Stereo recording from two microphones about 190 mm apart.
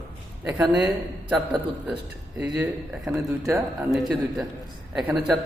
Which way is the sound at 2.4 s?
5° right (ahead or behind).